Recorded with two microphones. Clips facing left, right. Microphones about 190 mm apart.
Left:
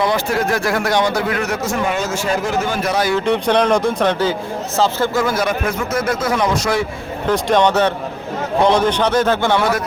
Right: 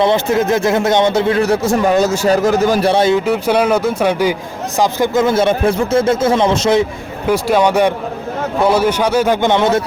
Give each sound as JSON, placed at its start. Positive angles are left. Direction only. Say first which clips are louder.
{"t": 0.0, "sound": "a man's voice", "louder": "right 4 dB", "side_deg": -25}
{"t": 3.2, "sound": "a man's voice", "louder": "right 1 dB", "side_deg": -5}
{"t": 7.3, "sound": "a man's voice", "louder": "right 2 dB", "side_deg": -10}